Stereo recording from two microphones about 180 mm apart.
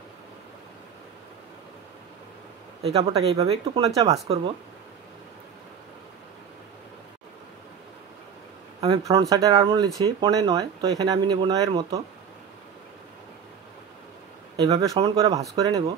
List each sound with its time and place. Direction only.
2.8 s speech: 35° right (ahead or behind)
8.8 s speech: 25° right (ahead or behind)
14.6 s speech: 20° right (ahead or behind)